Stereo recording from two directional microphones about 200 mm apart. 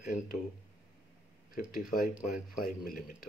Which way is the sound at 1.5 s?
45° left (ahead or behind).